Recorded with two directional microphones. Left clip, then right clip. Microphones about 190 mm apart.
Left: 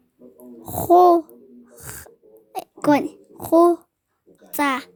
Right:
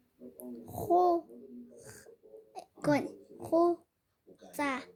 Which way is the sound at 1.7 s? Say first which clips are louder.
Left 12 dB; 60° left (ahead or behind).